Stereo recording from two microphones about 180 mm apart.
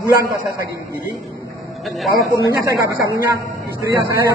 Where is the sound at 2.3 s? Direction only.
15° right (ahead or behind).